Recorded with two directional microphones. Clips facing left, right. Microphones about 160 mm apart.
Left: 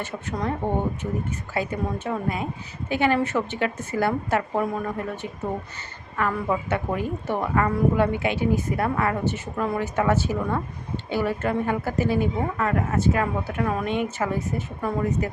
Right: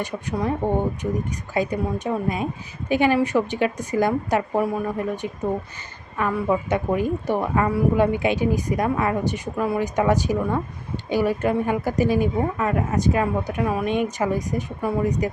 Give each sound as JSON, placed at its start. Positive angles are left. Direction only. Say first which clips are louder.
{"t": 0.0, "sound": "speech", "louder": "right 3 dB", "side_deg": -10}